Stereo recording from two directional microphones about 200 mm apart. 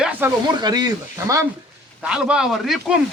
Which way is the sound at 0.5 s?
20° right (ahead or behind).